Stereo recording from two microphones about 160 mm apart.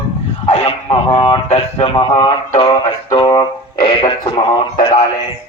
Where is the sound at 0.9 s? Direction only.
30° left (ahead or behind).